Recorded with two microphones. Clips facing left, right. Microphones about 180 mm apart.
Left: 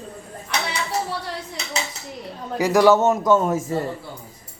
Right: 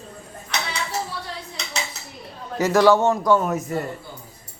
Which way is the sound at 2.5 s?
15° left (ahead or behind).